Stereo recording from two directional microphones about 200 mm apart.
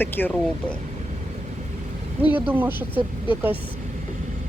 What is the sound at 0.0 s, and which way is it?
Speech, 10° left (ahead or behind).